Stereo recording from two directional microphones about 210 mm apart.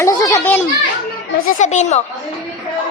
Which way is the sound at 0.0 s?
15° left (ahead or behind).